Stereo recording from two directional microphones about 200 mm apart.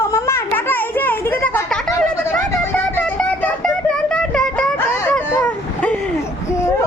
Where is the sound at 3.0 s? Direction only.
5° left (ahead or behind).